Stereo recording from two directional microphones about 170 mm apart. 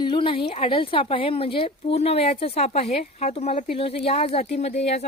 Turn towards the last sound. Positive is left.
turn(degrees=40)  # may be behind; listen again after turning